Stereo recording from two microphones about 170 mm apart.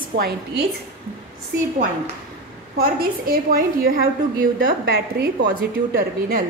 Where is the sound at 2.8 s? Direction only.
60° right (ahead or behind).